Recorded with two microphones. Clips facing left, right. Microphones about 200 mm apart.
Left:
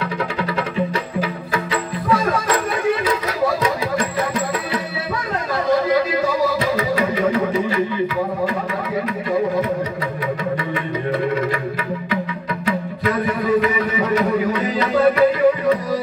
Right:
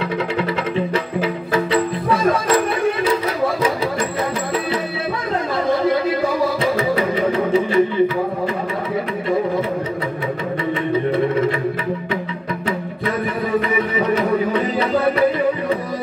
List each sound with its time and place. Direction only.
1.2 s music: 25° right (ahead or behind)
6.6 s music: 25° right (ahead or behind)